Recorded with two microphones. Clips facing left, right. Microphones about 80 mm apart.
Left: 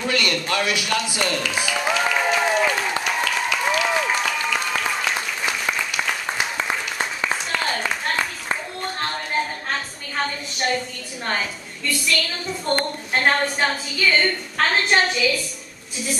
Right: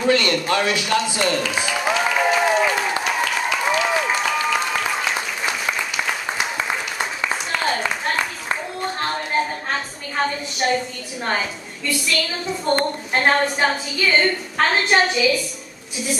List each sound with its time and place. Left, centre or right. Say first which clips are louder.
0.0 s speech: right 5 dB; right
1.0 s a man's voice: right 3 dB; centre
1.3 s a woman's voice: right 3 dB; centre
1.7 s applause: even; centre
3.0 s a sound: right 2 dB; centre
3.6 s applause: right 1 dB; centre
7.0 s applause: right 1 dB; centre
11.2 s a woman's voice: right 2 dB; centre